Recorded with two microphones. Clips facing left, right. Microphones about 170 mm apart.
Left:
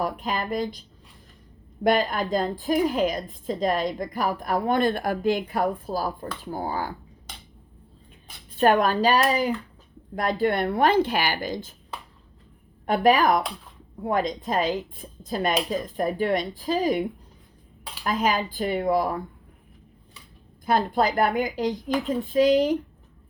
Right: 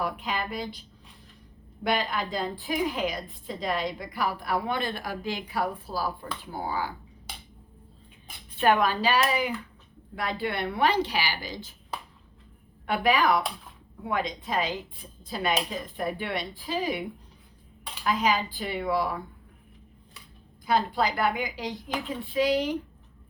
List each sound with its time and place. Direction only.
0.0 s a woman's voice: 45° left (ahead or behind)
8.5 s a woman's voice: 45° left (ahead or behind)
12.8 s a woman's voice: 45° left (ahead or behind)
20.7 s a woman's voice: 50° left (ahead or behind)